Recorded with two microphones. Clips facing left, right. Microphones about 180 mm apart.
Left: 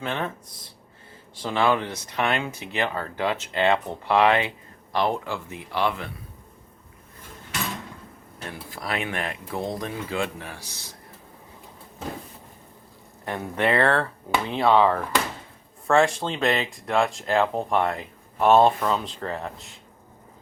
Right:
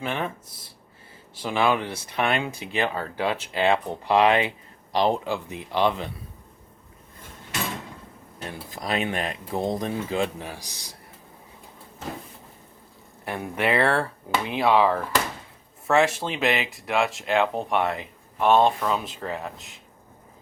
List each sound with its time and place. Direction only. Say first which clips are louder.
0.0 s speech: even; 10° right (ahead or behind)
1.4 s speech: even; 15° right (ahead or behind)
8.4 s speech: right 2 dB; 20° right (ahead or behind)
13.2 s speech: left 1 dB; 10° right (ahead or behind)